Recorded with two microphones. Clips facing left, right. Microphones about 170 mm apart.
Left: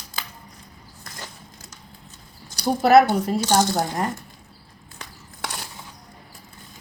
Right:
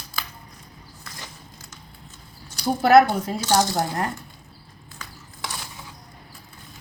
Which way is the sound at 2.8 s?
5° left (ahead or behind).